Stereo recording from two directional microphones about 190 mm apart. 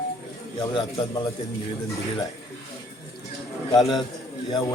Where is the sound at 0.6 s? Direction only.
25° left (ahead or behind).